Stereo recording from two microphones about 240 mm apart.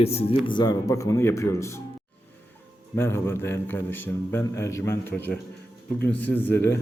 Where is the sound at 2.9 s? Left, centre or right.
Centre.